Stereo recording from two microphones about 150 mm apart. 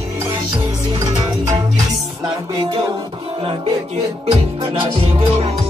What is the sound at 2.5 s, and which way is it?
Music, 30° right (ahead or behind).